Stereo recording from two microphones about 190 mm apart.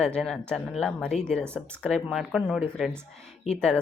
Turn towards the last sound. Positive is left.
turn(degrees=5)  # may be behind; listen again after turning